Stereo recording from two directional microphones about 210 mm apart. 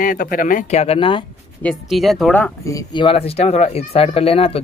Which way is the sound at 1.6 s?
Centre (ahead or behind).